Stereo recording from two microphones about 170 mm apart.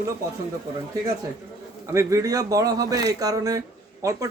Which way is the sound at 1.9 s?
20° right (ahead or behind).